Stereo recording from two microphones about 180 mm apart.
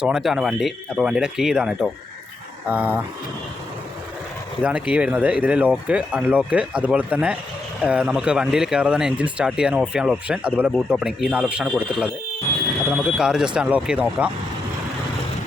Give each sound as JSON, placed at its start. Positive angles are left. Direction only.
{"t": 0.0, "sound": "speech", "side_deg": -5}
{"t": 4.6, "sound": "speech", "side_deg": -5}